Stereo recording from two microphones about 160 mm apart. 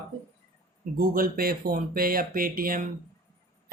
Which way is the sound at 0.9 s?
65° right (ahead or behind).